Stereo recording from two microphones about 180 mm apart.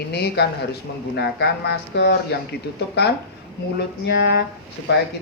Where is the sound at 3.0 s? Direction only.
65° left (ahead or behind).